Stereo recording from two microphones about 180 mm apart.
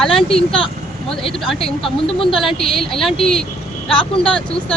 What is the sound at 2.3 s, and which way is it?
Speech, centre (ahead or behind).